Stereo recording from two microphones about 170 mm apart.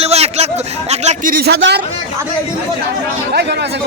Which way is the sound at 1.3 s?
70° right (ahead or behind).